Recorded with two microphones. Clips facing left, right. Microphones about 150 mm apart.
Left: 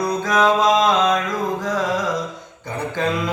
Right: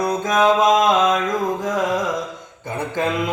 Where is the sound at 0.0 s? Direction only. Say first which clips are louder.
Right 1 dB; 20° right (ahead or behind).